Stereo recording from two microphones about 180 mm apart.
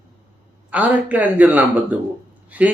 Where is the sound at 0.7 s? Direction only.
10° right (ahead or behind).